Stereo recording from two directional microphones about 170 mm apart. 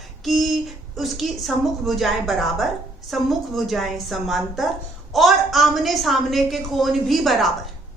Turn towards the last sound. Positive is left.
turn(degrees=0)  # may be behind; listen again after turning